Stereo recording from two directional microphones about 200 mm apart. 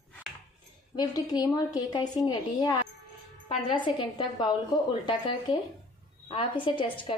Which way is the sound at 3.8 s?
20° left (ahead or behind).